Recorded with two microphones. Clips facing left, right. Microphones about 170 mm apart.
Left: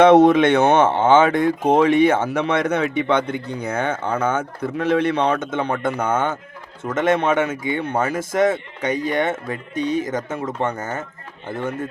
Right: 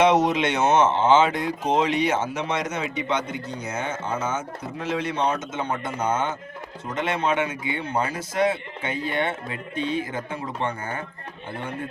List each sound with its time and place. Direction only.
0.0 s a man's voice: 55° left (ahead or behind)